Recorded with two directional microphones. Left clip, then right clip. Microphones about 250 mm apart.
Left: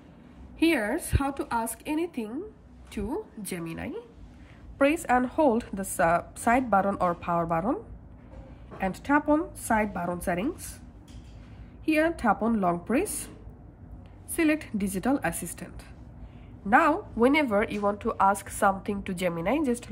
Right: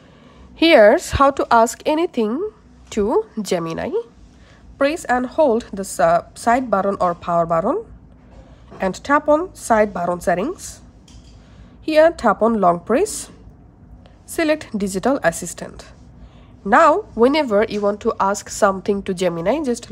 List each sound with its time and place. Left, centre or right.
0.6 s a woman's voice: centre
11.8 s speech: centre
14.3 s speech: centre